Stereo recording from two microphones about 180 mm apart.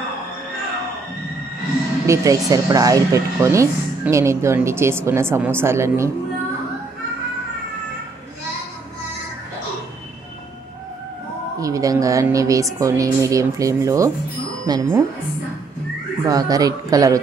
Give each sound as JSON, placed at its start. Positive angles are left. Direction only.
{"t": 2.0, "sound": "speech", "side_deg": -20}
{"t": 11.6, "sound": "speech", "side_deg": -20}
{"t": 16.3, "sound": "speech", "side_deg": -20}